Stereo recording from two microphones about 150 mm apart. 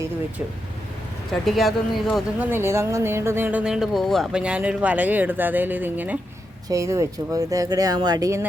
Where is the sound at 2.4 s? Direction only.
15° right (ahead or behind).